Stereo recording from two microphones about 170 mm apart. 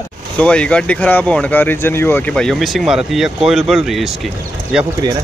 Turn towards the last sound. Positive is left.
turn(degrees=-5)  # may be behind; listen again after turning